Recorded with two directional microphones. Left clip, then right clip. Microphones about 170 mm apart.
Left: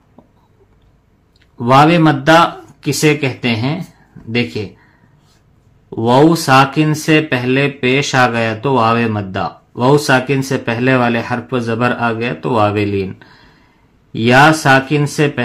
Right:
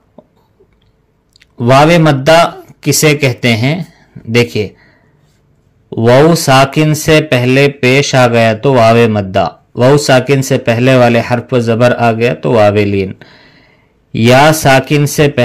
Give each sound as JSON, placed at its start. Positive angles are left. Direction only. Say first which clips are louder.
{"t": 1.6, "sound": "speech", "louder": "right 3 dB", "side_deg": -40}
{"t": 5.9, "sound": "speech", "louder": "right 4 dB", "side_deg": -40}